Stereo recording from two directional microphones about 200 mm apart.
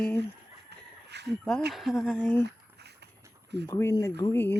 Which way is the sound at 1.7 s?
Centre (ahead or behind).